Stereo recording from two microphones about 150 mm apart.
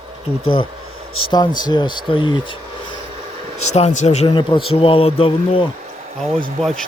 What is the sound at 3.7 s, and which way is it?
Speech, 50° left (ahead or behind).